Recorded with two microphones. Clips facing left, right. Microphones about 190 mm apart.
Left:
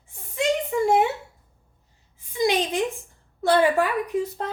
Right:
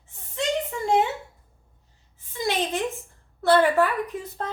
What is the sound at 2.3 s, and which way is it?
Speech, 15° left (ahead or behind).